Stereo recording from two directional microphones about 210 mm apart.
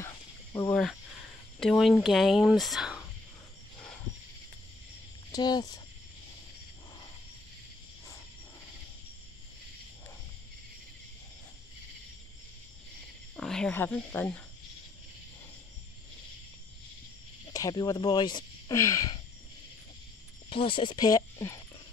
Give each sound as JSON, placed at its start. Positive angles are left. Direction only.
{"t": 0.0, "sound": "snake", "side_deg": 15}
{"t": 1.6, "sound": "speech", "side_deg": 0}
{"t": 5.3, "sound": "speech", "side_deg": 20}
{"t": 13.4, "sound": "speech", "side_deg": 5}
{"t": 17.5, "sound": "speech", "side_deg": 15}
{"t": 20.4, "sound": "speech", "side_deg": 25}